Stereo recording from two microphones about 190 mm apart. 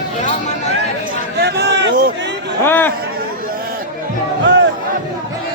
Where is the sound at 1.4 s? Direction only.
60° right (ahead or behind).